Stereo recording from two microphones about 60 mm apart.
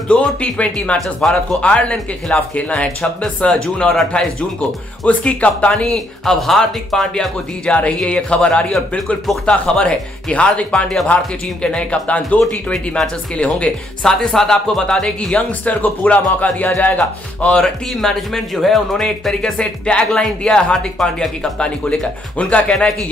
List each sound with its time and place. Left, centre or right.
0.1 s speech: centre
1.2 s speech: centre
3.0 s speech: centre
7.6 s speech: centre
12.7 s speech: centre
15.7 s speech: left
18.0 s speech: centre
21.5 s speech: centre